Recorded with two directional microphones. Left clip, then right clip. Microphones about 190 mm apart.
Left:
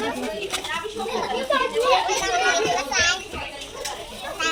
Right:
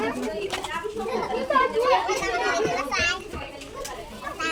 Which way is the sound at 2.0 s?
50° right (ahead or behind).